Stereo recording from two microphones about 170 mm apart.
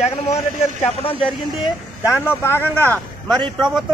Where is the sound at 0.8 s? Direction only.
30° left (ahead or behind).